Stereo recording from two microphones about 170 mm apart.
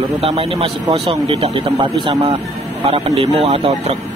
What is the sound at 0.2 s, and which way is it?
A man's voice, 35° right (ahead or behind).